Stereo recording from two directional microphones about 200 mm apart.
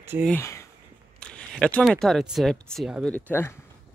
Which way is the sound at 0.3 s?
15° left (ahead or behind).